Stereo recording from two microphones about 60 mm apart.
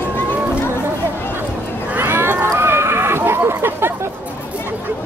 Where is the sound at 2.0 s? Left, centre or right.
Right.